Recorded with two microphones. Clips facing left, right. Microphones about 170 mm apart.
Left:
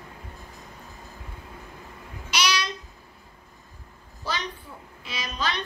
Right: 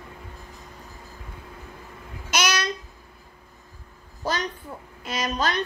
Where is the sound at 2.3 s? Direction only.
50° right (ahead or behind).